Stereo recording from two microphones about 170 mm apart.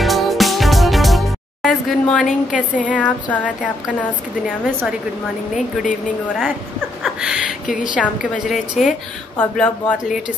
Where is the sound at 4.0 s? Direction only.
5° left (ahead or behind).